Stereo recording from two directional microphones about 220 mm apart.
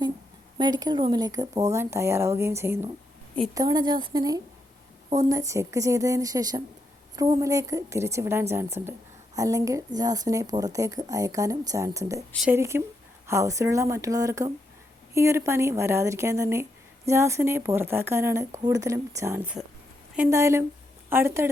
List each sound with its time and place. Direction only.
0.6 s a woman's voice: 20° right (ahead or behind)